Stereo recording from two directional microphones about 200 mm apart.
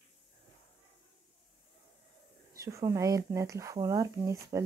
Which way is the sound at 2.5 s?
15° right (ahead or behind).